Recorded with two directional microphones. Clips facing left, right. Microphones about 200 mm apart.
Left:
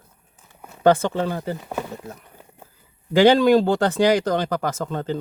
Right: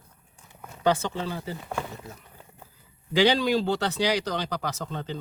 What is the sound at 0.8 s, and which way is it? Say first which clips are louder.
Speech: left 7 dB; 55° left (ahead or behind).